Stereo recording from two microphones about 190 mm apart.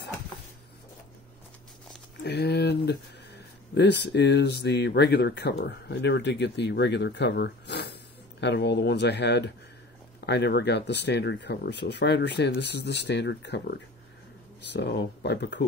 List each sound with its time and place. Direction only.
2.2 s speech: 60° left (ahead or behind)